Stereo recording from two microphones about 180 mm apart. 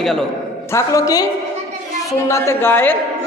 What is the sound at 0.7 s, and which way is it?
Speech, 20° left (ahead or behind).